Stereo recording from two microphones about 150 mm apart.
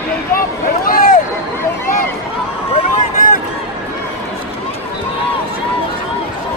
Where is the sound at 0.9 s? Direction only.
65° left (ahead or behind).